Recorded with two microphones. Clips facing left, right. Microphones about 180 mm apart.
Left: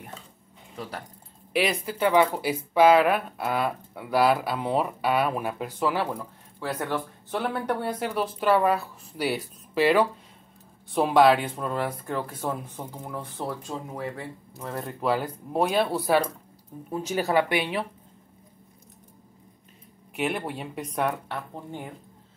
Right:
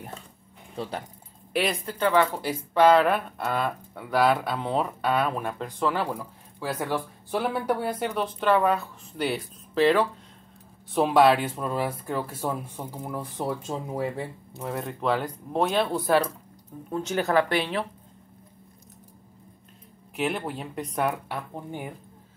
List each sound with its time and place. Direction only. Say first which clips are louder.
0.8 s speech: right 4 dB; 30° right (ahead or behind)
1.5 s speech: left 1 dB; centre (ahead or behind)
6.1 s speech: even; 10° right (ahead or behind)
13.6 s speech: right 4 dB; 25° right (ahead or behind)
14.6 s speech: right 1 dB; 5° right (ahead or behind)
20.2 s speech: even; centre (ahead or behind)